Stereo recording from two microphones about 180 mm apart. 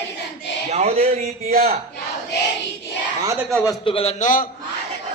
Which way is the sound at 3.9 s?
30° left (ahead or behind).